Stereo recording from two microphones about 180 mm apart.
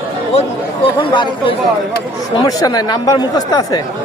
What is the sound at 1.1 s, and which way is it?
Speech, 25° left (ahead or behind).